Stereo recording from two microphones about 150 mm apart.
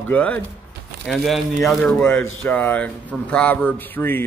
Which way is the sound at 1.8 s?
10° left (ahead or behind).